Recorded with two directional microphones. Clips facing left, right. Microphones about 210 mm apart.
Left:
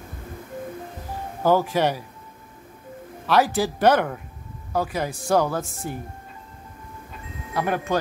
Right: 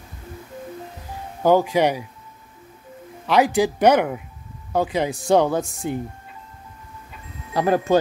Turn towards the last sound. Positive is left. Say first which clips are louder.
# right 6 dB
turn(degrees=-35)  # may be behind; listen again after turning